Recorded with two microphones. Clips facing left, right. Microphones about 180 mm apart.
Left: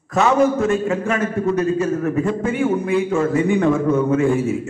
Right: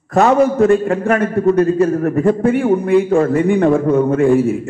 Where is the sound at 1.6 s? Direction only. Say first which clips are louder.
Right 5 dB; 35° right (ahead or behind).